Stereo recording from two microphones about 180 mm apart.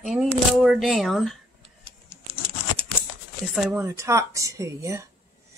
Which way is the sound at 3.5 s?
5° right (ahead or behind).